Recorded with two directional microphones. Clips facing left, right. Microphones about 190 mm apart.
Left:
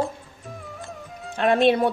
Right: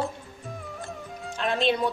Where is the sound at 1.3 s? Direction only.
55° left (ahead or behind).